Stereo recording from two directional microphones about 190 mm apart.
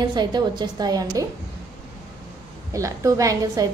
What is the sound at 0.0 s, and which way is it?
A woman's voice, 20° right (ahead or behind).